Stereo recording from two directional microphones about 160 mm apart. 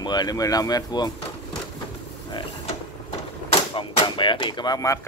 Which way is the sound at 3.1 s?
30° left (ahead or behind).